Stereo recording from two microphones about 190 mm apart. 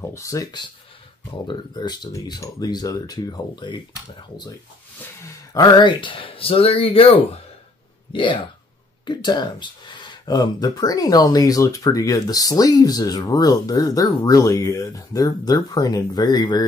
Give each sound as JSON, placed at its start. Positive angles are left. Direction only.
{"t": 0.1, "sound": "speech", "side_deg": 15}
{"t": 5.5, "sound": "speech", "side_deg": 20}